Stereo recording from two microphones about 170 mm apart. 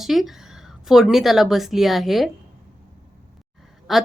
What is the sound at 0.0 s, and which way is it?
Speech, centre (ahead or behind).